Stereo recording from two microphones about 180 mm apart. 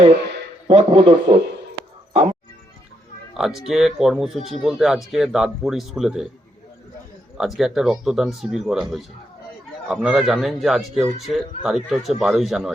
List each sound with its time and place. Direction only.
0.7 s a man's voice: 25° right (ahead or behind)
2.1 s speech: 40° right (ahead or behind)
3.3 s a man's voice: centre (ahead or behind)
7.3 s a man's voice: centre (ahead or behind)